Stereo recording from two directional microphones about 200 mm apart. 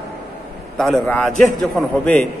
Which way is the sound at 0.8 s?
5° left (ahead or behind).